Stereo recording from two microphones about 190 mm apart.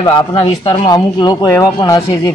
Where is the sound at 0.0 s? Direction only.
25° left (ahead or behind).